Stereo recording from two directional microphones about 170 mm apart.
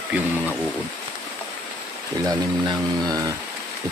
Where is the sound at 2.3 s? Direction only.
20° right (ahead or behind).